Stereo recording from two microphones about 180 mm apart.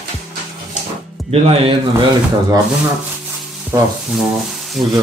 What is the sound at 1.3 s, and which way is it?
Speech, 35° right (ahead or behind).